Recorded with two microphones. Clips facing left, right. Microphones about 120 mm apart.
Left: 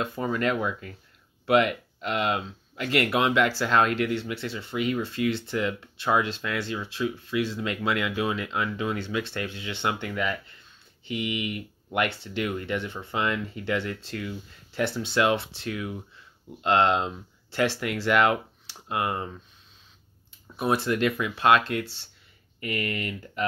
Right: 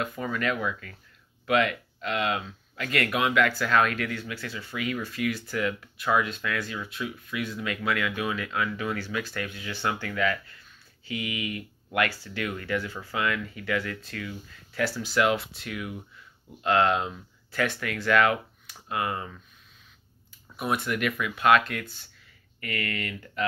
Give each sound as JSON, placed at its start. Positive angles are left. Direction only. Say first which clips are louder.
{"t": 0.0, "sound": "speech", "louder": "left 3 dB", "side_deg": 25}
{"t": 20.5, "sound": "speech", "louder": "left 4 dB", "side_deg": 30}